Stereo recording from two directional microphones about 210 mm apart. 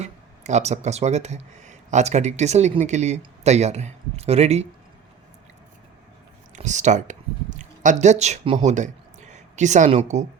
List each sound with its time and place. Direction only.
0.0 s speech: 35° right (ahead or behind)
6.6 s speech: 35° right (ahead or behind)